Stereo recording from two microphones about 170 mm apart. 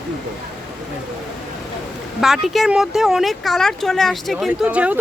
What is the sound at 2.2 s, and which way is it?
Speech, centre (ahead or behind).